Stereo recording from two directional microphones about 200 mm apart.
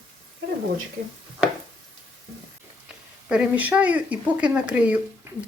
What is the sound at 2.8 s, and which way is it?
Speech, 5° right (ahead or behind).